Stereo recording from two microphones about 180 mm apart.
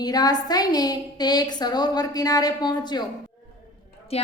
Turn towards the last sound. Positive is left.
turn(degrees=35)  # may be behind; listen again after turning